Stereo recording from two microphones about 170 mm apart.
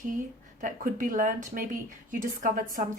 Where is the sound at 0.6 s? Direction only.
50° right (ahead or behind).